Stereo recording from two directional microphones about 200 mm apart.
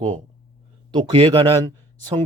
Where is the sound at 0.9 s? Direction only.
25° right (ahead or behind).